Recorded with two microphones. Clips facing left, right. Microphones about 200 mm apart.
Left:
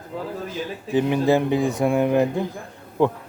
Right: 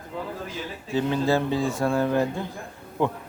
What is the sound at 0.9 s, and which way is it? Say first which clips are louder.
Speech: left 4 dB; 15° left (ahead or behind).